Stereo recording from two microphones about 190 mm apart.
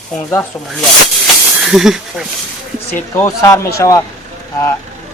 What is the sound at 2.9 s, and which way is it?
Speech, 15° left (ahead or behind).